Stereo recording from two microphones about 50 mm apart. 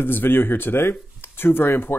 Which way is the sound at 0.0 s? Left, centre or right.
Left.